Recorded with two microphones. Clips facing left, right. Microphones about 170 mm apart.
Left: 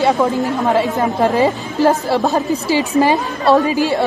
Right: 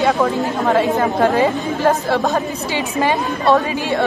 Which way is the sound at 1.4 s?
35° left (ahead or behind).